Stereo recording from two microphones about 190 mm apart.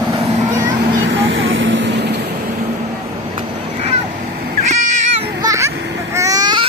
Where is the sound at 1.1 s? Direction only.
80° right; by 2.3 s 65° right (ahead or behind).